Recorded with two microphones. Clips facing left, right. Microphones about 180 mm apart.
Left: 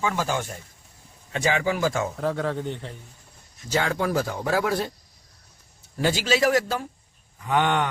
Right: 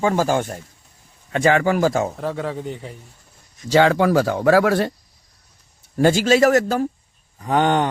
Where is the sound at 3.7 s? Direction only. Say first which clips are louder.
Right 9 dB; 90° right; by 4.9 s 70° right (ahead or behind).